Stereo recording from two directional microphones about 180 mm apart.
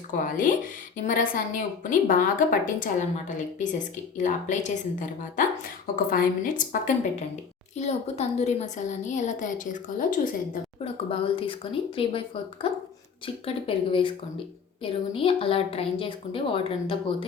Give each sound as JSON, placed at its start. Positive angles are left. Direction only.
{"t": 0.3, "sound": "a woman's voice", "side_deg": 50}
{"t": 7.8, "sound": "a woman's voice", "side_deg": 35}
{"t": 11.1, "sound": "a woman's voice", "side_deg": 30}